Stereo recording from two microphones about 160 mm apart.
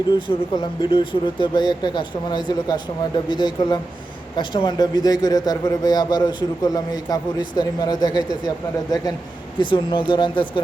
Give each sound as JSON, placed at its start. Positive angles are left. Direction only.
{"t": 0.1, "sound": "a man's voice", "side_deg": 30}